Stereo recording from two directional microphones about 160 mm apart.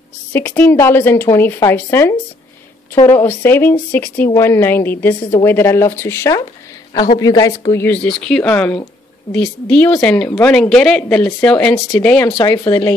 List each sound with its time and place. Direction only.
0.3 s a woman's voice: 10° left (ahead or behind)
12.3 s speech: 25° left (ahead or behind)